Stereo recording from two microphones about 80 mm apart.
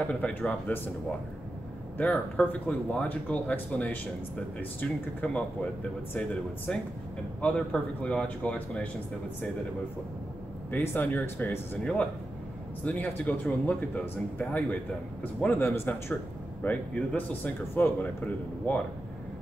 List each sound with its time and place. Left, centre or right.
0.1 s speech: centre
2.0 s speech: centre
10.7 s speech: left
11.8 s speech: centre
15.7 s speech: left